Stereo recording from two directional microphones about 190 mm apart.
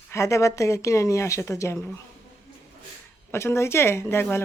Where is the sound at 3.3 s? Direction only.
15° left (ahead or behind).